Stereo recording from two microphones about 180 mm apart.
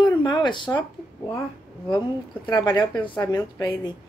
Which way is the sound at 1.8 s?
25° left (ahead or behind).